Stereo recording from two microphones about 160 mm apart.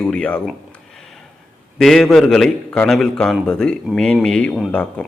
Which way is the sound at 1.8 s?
Centre (ahead or behind).